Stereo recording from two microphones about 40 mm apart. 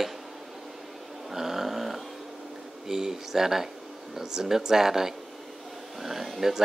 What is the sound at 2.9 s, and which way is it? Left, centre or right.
Speech, centre.